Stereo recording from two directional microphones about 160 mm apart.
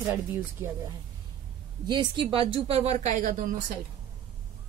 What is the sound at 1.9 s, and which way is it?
Speech, 30° right (ahead or behind).